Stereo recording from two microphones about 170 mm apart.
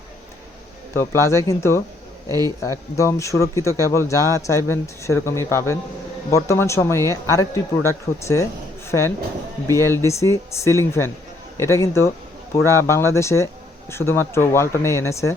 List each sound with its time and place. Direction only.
0.9 s speech: 15° left (ahead or behind)